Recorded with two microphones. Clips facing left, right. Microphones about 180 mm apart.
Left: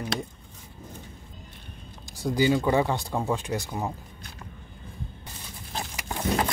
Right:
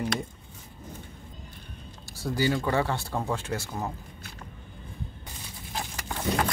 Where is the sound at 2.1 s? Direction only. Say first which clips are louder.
Left 4 dB; 15° left (ahead or behind).